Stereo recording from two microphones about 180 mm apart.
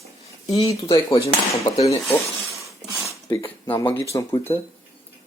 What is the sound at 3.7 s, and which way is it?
Speech, 20° left (ahead or behind).